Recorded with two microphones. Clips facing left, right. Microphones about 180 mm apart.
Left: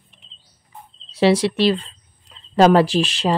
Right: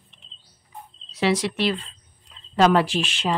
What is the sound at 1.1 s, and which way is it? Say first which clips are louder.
Speech: left 6 dB; 30° left (ahead or behind).